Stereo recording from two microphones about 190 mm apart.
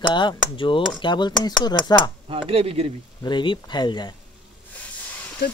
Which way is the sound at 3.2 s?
25° left (ahead or behind).